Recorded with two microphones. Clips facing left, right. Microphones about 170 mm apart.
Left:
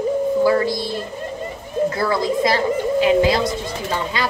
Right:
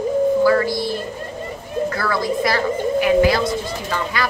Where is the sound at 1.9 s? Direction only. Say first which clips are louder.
Left 2 dB; 20° left (ahead or behind).